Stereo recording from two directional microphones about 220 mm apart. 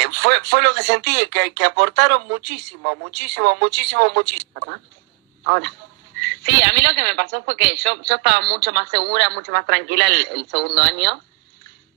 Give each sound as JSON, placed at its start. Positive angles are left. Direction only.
{"t": 0.0, "sound": "a woman's voice", "side_deg": -50}